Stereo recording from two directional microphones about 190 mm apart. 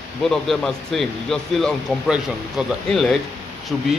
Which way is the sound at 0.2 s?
Centre (ahead or behind).